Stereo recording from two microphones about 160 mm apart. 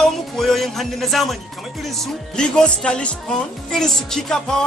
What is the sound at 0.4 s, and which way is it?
Speech, centre (ahead or behind).